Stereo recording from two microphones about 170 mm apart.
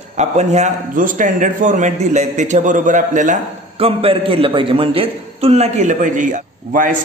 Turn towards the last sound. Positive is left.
turn(degrees=-55)  # may be behind; listen again after turning